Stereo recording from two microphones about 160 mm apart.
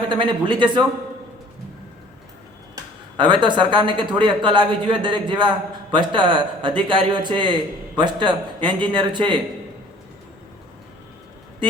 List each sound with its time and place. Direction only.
0.1 s speech: 30° right (ahead or behind)
3.2 s a man's voice: 30° right (ahead or behind)